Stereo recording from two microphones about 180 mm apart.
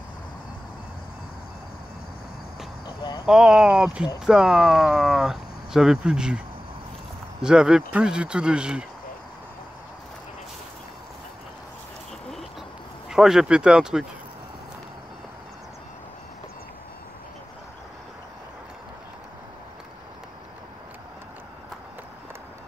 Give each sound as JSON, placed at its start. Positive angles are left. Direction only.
{"t": 3.0, "sound": "speech", "side_deg": 30}
{"t": 3.3, "sound": "speech", "side_deg": -5}
{"t": 7.4, "sound": "speech", "side_deg": -5}
{"t": 13.1, "sound": "speech", "side_deg": -5}